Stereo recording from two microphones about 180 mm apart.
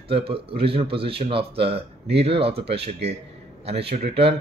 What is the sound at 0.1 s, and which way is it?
Speech, 30° right (ahead or behind).